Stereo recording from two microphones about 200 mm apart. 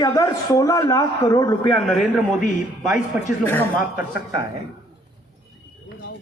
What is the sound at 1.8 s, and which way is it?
Speech, centre (ahead or behind).